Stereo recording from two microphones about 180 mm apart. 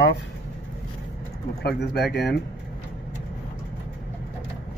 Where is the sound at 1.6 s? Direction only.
65° left (ahead or behind).